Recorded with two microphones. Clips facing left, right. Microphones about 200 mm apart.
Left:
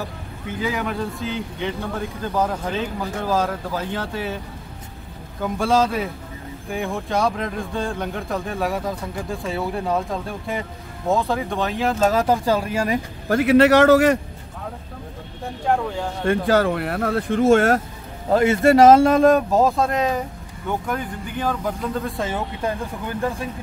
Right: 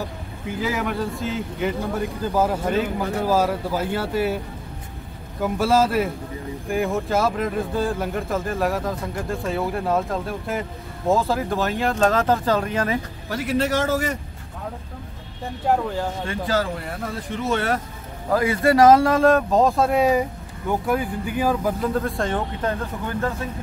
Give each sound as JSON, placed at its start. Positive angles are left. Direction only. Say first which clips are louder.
{"t": 0.6, "sound": "speech", "louder": "even", "side_deg": -5}
{"t": 5.4, "sound": "speech", "louder": "even", "side_deg": -5}
{"t": 13.3, "sound": "a man's voice", "louder": "left 8 dB", "side_deg": 65}
{"t": 15.6, "sound": "speech", "louder": "even", "side_deg": -5}
{"t": 16.3, "sound": "speech", "louder": "left 9 dB", "side_deg": 60}
{"t": 18.3, "sound": "speech", "louder": "left 3 dB", "side_deg": 25}
{"t": 19.6, "sound": "speech", "louder": "right 1 dB", "side_deg": 0}